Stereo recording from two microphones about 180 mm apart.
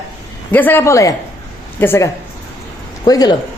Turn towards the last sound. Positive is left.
turn(degrees=20)  # may be behind; listen again after turning